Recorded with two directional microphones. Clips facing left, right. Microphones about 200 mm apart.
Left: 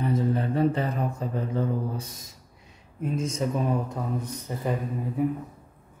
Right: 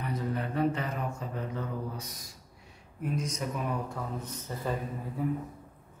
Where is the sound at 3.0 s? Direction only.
25° left (ahead or behind).